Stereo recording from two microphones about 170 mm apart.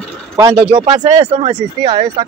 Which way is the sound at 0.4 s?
20° right (ahead or behind).